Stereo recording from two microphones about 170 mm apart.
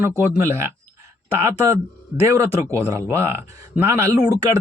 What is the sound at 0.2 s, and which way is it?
Speech, 15° right (ahead or behind).